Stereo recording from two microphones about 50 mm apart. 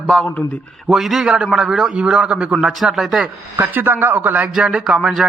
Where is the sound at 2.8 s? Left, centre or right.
Centre.